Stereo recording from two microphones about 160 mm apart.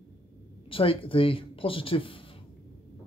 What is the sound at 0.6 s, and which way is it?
Speech, 35° left (ahead or behind).